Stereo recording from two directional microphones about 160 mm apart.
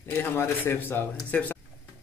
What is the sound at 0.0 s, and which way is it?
A man's voice, 15° left (ahead or behind).